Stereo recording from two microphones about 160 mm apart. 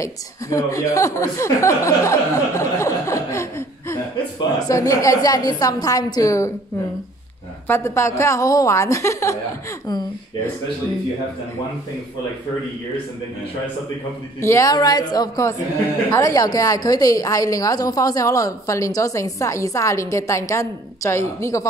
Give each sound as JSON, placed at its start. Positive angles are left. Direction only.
{"t": 0.0, "sound": "a woman's voice", "side_deg": 20}
{"t": 7.6, "sound": "a woman's voice", "side_deg": 15}
{"t": 14.4, "sound": "a woman's voice", "side_deg": 20}